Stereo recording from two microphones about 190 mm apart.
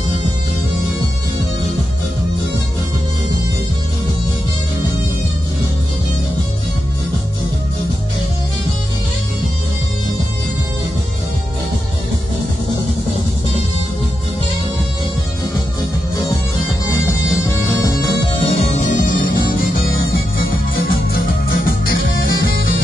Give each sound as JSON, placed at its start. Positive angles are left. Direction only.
{"t": 16.8, "sound": "music", "side_deg": 15}
{"t": 20.9, "sound": "music", "side_deg": 50}